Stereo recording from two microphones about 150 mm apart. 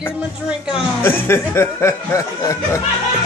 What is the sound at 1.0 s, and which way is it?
Speech, 15° left (ahead or behind).